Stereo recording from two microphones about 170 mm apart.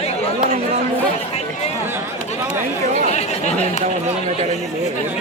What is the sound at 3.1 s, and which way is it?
Chatter, 40° left (ahead or behind).